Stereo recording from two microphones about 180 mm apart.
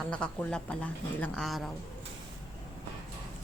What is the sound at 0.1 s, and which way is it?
A woman's voice, 5° left (ahead or behind).